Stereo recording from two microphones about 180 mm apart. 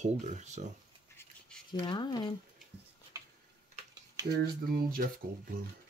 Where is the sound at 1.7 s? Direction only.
25° left (ahead or behind).